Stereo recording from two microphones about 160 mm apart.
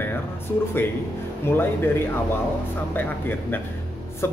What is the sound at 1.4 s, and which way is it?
A man's voice, 15° left (ahead or behind).